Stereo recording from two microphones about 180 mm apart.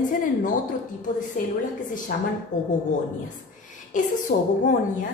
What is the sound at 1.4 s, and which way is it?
A woman's voice, 45° left (ahead or behind).